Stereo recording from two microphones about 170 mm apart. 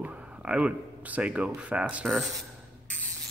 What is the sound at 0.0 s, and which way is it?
Speech, 10° right (ahead or behind).